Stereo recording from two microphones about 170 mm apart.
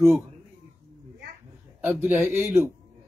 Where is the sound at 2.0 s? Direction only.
5° right (ahead or behind).